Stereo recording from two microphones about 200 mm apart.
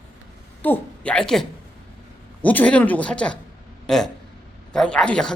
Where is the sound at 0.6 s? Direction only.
10° left (ahead or behind).